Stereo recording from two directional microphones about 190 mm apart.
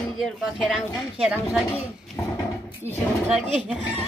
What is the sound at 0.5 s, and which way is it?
Speech, 5° right (ahead or behind).